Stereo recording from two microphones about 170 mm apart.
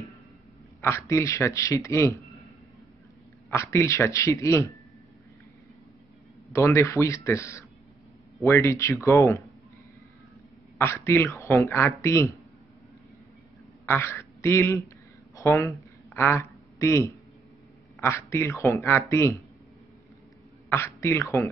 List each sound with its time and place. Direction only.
0.7 s a man's voice: 15° left (ahead or behind)
3.4 s a man's voice: 15° left (ahead or behind)
6.5 s a man's voice: 15° left (ahead or behind)
10.8 s a man's voice: 15° left (ahead or behind)
13.8 s a man's voice: 15° left (ahead or behind)
15.3 s a sound: 15° left (ahead or behind)
18.0 s a man's voice: 15° left (ahead or behind)
20.7 s a man's voice: 15° left (ahead or behind)